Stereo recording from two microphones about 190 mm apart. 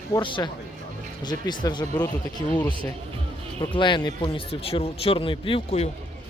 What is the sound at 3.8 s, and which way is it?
Speech, 25° left (ahead or behind).